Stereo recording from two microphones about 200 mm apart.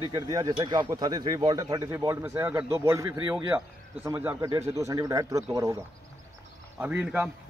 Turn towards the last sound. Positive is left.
turn(degrees=-5)  # may be behind; listen again after turning